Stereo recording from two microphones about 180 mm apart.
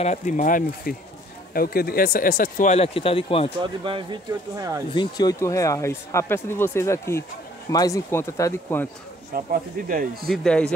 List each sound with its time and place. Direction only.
0.0 s speech: 40° left (ahead or behind)
3.6 s speech: 25° right (ahead or behind)
4.9 s speech: 20° left (ahead or behind)
9.3 s speech: 50° right (ahead or behind)
10.3 s a man's voice: 5° left (ahead or behind)